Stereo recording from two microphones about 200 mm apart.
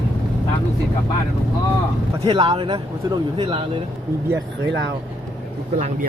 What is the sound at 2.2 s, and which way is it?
Speech, 20° right (ahead or behind).